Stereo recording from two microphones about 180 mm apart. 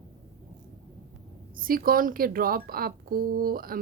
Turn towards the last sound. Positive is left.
turn(degrees=-55)  # may be behind; listen again after turning